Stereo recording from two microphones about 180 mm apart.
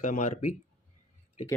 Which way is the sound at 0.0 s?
45° left (ahead or behind).